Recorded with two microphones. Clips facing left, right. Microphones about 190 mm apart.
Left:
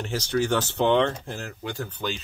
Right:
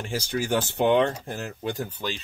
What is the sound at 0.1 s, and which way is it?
Speech, 10° right (ahead or behind).